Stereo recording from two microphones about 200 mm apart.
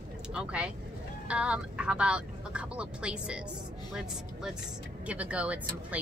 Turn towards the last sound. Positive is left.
turn(degrees=-5)  # may be behind; listen again after turning